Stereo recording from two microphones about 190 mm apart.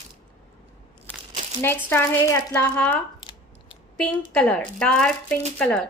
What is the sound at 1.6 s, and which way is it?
A woman's voice, 10° left (ahead or behind).